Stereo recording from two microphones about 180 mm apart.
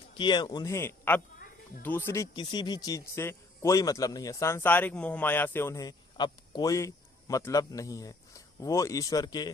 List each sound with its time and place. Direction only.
0.1 s a man's voice: 25° left (ahead or behind)